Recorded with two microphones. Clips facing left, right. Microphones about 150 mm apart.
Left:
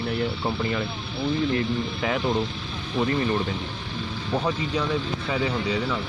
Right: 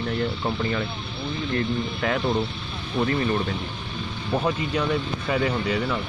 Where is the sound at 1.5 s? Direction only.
15° left (ahead or behind).